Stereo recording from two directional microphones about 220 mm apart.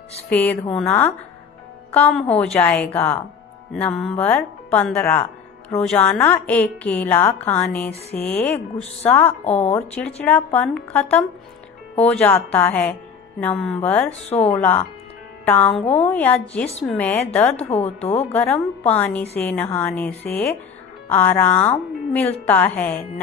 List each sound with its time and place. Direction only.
0.3 s a woman's voice: 10° left (ahead or behind)
9.4 s speech: 30° left (ahead or behind)
9.8 s a woman's voice: 5° left (ahead or behind)
15.8 s speech: 30° left (ahead or behind)
16.1 s a woman's voice: 5° left (ahead or behind)
17.8 s speech: 30° left (ahead or behind)
18.3 s a woman's voice: 5° left (ahead or behind)